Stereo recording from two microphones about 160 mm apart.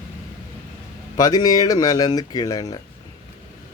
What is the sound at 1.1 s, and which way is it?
Speech, 25° left (ahead or behind).